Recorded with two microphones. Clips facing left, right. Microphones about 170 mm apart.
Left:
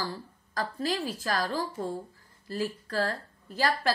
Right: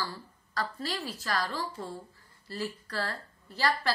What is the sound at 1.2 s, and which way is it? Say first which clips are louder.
A woman's voice: left 2 dB; 40° left (ahead or behind).